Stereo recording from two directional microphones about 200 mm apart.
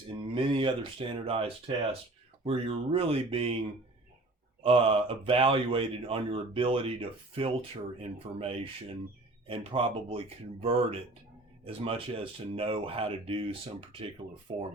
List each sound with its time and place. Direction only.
0.2 s speech: 25° right (ahead or behind)
4.6 s speech: 30° right (ahead or behind)